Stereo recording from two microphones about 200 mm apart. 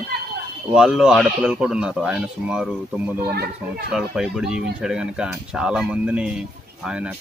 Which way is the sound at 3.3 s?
50° right (ahead or behind).